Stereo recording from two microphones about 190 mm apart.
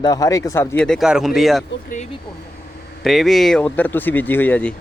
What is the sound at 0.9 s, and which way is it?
Speech, centre (ahead or behind).